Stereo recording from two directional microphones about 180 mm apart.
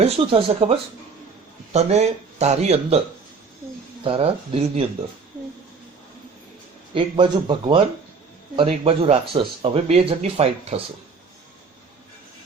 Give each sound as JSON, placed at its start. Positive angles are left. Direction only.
{"t": 0.0, "sound": "speech", "side_deg": -30}
{"t": 4.0, "sound": "speech", "side_deg": -30}
{"t": 6.9, "sound": "speech", "side_deg": -25}